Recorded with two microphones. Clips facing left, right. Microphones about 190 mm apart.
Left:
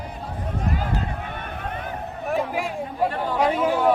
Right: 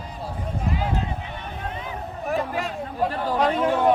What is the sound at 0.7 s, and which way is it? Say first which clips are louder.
Run: right 2 dB; 50° left (ahead or behind).